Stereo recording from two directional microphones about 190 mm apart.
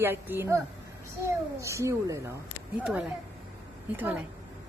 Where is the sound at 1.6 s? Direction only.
15° right (ahead or behind).